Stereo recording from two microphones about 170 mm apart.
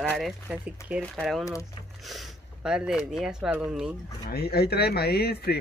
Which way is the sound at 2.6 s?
5° right (ahead or behind).